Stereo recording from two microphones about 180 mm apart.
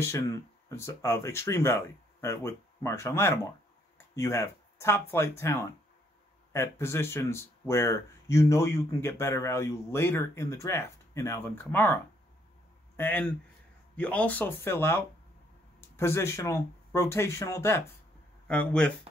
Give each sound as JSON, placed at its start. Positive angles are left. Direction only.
{"t": 0.0, "sound": "speech", "side_deg": 15}
{"t": 16.0, "sound": "speech", "side_deg": 15}